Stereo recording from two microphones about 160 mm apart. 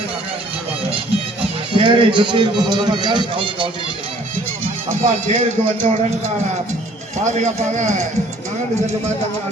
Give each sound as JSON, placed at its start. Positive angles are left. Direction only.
{"t": 1.7, "sound": "a man's voice", "side_deg": -30}
{"t": 5.0, "sound": "speech", "side_deg": -50}